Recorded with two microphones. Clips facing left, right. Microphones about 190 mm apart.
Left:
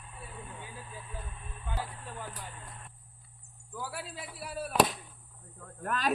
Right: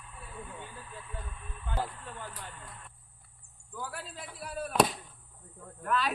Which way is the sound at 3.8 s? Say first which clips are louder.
Left 1 dB; 5° left (ahead or behind).